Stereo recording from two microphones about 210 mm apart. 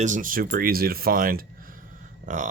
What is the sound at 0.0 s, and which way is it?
Speech, 40° right (ahead or behind).